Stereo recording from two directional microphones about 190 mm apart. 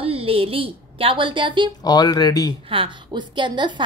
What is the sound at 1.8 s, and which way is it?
Speech, 20° left (ahead or behind).